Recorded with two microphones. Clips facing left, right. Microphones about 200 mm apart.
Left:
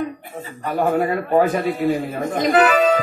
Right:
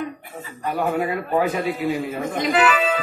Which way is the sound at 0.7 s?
45° left (ahead or behind).